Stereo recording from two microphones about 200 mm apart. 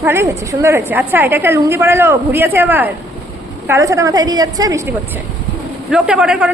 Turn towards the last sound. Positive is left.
turn(degrees=-5)  # may be behind; listen again after turning